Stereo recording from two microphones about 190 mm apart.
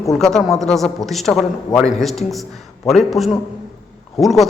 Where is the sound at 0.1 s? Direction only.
Centre (ahead or behind).